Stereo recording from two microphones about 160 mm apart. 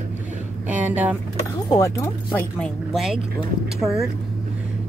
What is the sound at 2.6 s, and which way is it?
Speech, centre (ahead or behind).